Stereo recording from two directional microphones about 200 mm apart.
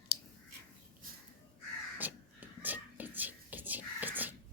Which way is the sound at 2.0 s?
10° right (ahead or behind).